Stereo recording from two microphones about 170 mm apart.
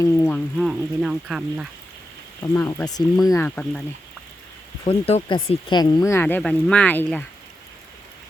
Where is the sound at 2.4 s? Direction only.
15° left (ahead or behind).